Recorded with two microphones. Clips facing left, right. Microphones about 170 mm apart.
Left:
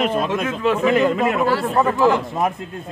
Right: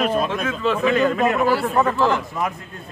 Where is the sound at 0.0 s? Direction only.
20° left (ahead or behind).